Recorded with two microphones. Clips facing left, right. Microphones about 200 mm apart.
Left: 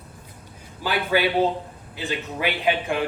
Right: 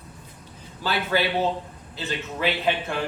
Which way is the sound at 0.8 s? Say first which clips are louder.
Left 2 dB; 10° left (ahead or behind).